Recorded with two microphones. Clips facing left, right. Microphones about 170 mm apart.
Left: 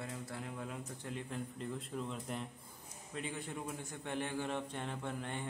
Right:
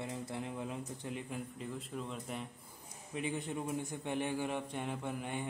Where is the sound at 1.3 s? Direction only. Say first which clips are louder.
Even; centre (ahead or behind).